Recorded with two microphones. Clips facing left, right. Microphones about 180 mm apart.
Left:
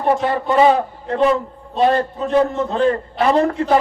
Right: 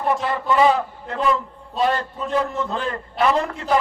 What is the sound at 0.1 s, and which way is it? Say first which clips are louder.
A man's voice: left 4 dB; 35° left (ahead or behind).